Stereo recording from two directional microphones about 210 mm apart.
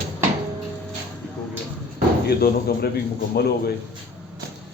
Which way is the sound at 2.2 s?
45° left (ahead or behind).